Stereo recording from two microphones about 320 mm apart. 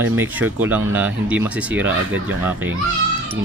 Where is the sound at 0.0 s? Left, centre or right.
Centre.